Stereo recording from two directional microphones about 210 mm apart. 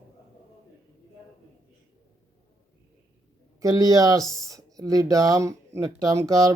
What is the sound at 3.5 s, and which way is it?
Speech, 15° right (ahead or behind).